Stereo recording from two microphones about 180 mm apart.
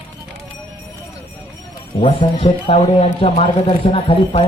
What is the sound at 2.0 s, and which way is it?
A man's voice, 30° left (ahead or behind).